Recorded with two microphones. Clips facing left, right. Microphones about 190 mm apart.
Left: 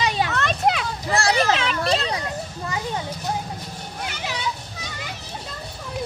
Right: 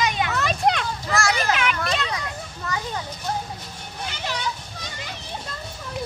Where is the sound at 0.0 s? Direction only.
30° left (ahead or behind).